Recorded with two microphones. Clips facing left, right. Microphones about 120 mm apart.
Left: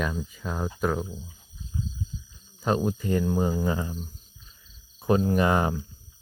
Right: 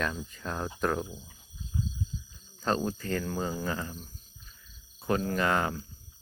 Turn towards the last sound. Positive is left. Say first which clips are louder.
# left 5 dB
turn(degrees=20)  # may be behind; listen again after turning